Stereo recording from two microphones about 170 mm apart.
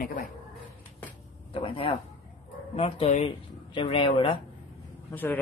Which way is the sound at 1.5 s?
30° left (ahead or behind).